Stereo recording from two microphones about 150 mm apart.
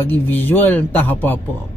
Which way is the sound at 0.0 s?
10° left (ahead or behind).